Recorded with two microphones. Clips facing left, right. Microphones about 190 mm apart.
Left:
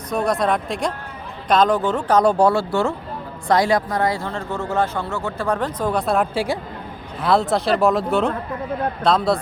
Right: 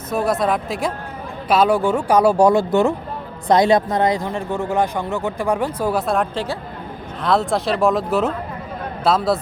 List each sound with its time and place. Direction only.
0.1 s speech: 5° right (ahead or behind)